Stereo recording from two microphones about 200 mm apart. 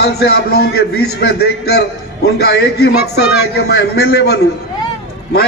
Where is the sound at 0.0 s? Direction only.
55° left (ahead or behind).